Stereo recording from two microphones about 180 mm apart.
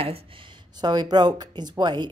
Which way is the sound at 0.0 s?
30° right (ahead or behind).